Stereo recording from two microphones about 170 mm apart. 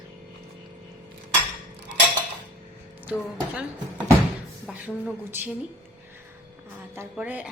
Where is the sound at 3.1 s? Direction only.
10° right (ahead or behind).